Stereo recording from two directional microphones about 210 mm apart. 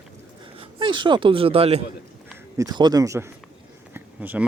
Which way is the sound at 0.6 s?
25° right (ahead or behind).